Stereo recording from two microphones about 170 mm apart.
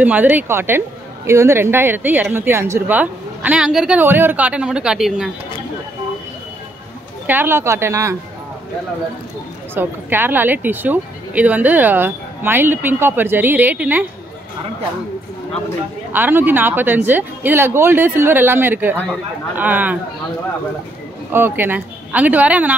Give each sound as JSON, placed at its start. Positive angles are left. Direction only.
{"t": 0.0, "sound": "speech", "side_deg": -10}
{"t": 7.2, "sound": "speech", "side_deg": -10}
{"t": 9.8, "sound": "speech", "side_deg": -10}
{"t": 16.1, "sound": "speech", "side_deg": -10}
{"t": 21.3, "sound": "speech", "side_deg": -10}